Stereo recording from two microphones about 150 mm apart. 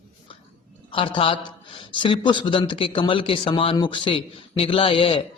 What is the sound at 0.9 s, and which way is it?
A man's voice, 35° left (ahead or behind).